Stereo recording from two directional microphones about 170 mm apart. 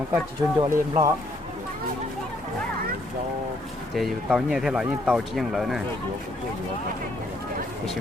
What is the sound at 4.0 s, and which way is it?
Speech, centre (ahead or behind).